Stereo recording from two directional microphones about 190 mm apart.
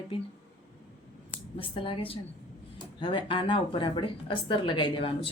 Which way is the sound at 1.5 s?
30° left (ahead or behind).